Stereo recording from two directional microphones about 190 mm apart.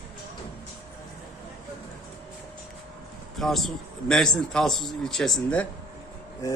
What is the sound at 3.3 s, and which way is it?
Speech, centre (ahead or behind).